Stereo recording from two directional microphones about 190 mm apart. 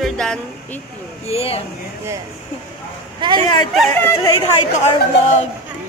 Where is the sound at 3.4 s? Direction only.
25° left (ahead or behind).